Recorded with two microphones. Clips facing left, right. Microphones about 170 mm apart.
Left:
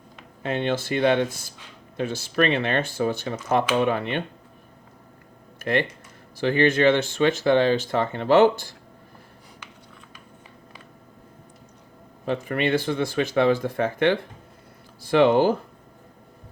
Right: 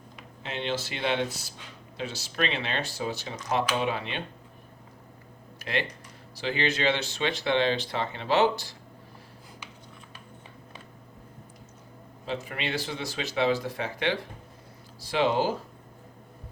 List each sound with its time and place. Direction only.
0.4 s speech: 50° left (ahead or behind)
5.7 s speech: 55° left (ahead or behind)
12.2 s speech: 50° left (ahead or behind)